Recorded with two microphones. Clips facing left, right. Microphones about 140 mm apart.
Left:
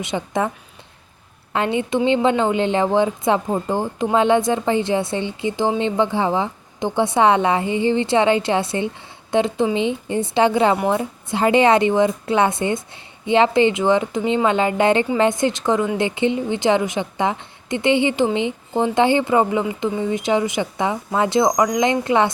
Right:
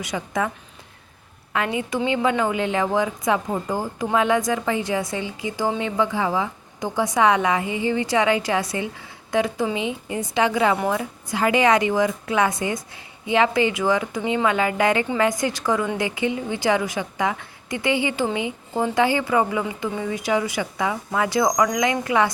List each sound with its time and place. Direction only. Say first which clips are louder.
0.0 s a woman's voice: left 3 dB; 25° left (ahead or behind)
1.5 s a woman's voice: left 4 dB; 30° left (ahead or behind)